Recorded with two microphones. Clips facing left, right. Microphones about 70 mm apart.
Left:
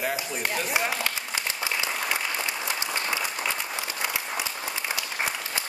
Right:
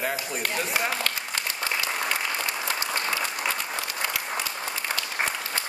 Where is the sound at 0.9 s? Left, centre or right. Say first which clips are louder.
Even; centre.